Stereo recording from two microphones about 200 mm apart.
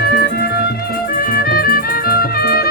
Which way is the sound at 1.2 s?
45° left (ahead or behind).